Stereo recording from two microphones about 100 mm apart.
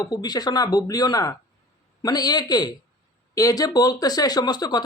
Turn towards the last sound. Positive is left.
turn(degrees=45)  # may be behind; listen again after turning